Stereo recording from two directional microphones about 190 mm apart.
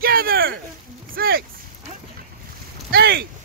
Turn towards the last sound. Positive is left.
turn(degrees=-55)  # may be behind; listen again after turning